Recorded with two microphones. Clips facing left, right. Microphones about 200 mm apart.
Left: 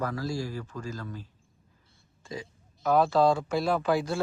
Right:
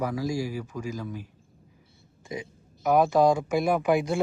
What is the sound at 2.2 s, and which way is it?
A man's voice, 15° right (ahead or behind).